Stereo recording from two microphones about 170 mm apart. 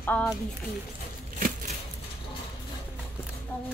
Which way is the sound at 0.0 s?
10° left (ahead or behind).